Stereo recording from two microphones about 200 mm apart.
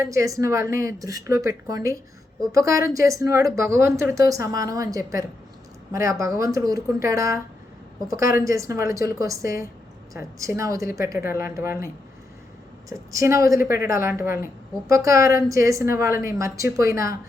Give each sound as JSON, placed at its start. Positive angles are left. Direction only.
{"t": 0.0, "sound": "a woman's voice", "side_deg": -15}
{"t": 12.9, "sound": "a woman's voice", "side_deg": -15}
{"t": 13.6, "sound": "speech", "side_deg": 45}
{"t": 13.8, "sound": "a woman's voice", "side_deg": -15}